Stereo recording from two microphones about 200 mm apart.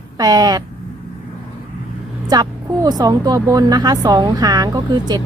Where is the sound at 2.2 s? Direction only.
20° right (ahead or behind).